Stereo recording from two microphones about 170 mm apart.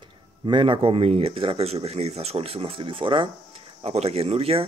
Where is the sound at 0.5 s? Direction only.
30° right (ahead or behind).